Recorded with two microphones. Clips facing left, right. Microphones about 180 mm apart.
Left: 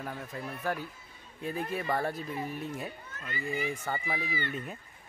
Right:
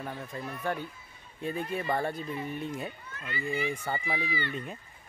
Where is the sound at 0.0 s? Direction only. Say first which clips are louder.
Right 1 dB; centre (ahead or behind).